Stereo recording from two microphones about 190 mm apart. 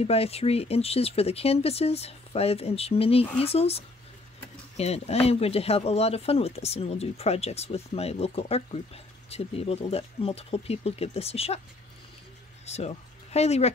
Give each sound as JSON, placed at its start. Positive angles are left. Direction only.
{"t": 0.0, "sound": "speech", "side_deg": 30}
{"t": 12.6, "sound": "speech", "side_deg": 35}